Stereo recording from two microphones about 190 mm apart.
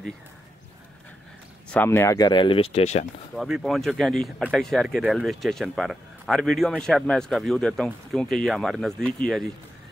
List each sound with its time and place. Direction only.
1.7 s speech: 10° left (ahead or behind); by 3.1 s 35° left (ahead or behind)
3.3 s speech: centre (ahead or behind)